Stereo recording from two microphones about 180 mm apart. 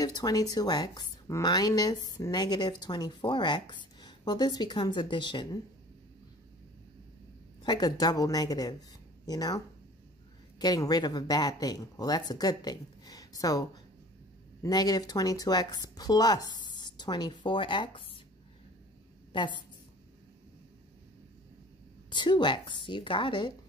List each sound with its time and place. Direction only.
0.0 s a woman's voice: 20° left (ahead or behind)
7.6 s a woman's voice: 20° left (ahead or behind)
10.6 s a woman's voice: 20° left (ahead or behind)
19.3 s a woman's voice: 25° left (ahead or behind)
22.1 s a woman's voice: 25° left (ahead or behind)